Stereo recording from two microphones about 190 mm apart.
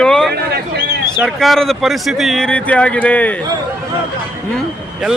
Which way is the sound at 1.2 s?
Centre (ahead or behind).